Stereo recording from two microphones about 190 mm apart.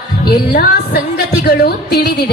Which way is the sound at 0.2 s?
55° left (ahead or behind).